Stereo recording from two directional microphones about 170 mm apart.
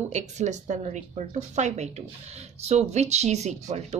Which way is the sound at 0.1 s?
45° right (ahead or behind).